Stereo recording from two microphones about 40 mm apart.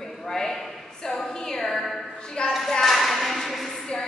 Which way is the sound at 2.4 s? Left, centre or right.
Left.